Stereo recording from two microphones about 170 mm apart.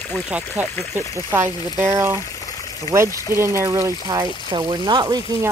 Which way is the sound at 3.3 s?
15° right (ahead or behind).